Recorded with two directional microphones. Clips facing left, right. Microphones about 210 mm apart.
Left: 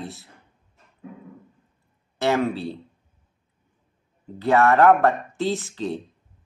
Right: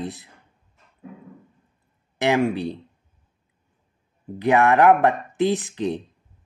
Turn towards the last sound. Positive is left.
turn(degrees=-15)  # may be behind; listen again after turning